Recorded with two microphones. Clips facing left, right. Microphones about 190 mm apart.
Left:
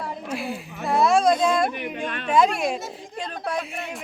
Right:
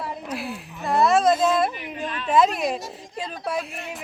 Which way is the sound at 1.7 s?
60° left (ahead or behind).